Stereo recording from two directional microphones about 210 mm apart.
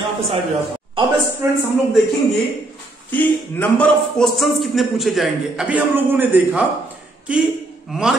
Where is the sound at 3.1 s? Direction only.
10° left (ahead or behind).